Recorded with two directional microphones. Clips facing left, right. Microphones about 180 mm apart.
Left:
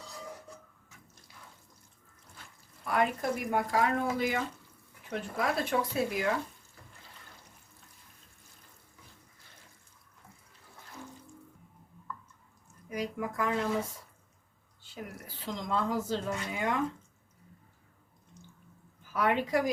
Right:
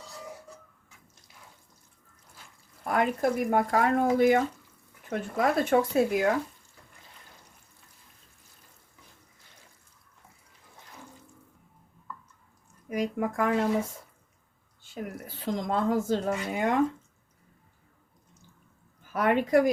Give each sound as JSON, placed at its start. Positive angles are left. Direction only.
{"t": 2.8, "sound": "speech", "side_deg": -50}
{"t": 12.9, "sound": "speech", "side_deg": -50}
{"t": 15.4, "sound": "speech", "side_deg": -50}
{"t": 19.1, "sound": "speech", "side_deg": -50}